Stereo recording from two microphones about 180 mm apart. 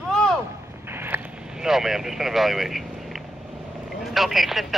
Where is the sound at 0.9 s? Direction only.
10° right (ahead or behind).